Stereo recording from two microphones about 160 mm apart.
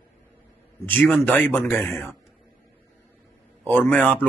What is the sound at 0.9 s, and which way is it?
Speech, 10° left (ahead or behind).